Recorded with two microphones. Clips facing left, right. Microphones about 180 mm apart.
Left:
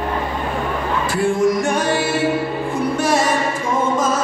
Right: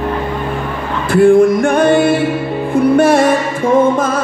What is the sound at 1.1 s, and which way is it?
Music, 55° right (ahead or behind).